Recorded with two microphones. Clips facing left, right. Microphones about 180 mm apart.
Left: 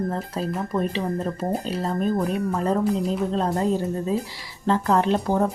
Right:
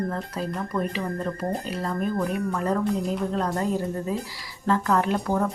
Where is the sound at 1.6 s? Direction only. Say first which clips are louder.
Left 3 dB; 25° left (ahead or behind).